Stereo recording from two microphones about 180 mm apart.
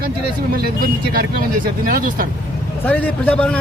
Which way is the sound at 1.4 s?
50° right (ahead or behind).